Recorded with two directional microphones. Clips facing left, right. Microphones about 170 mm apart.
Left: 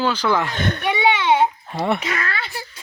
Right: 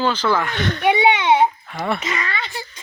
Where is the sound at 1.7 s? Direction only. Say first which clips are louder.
Left 2 dB; 25° left (ahead or behind).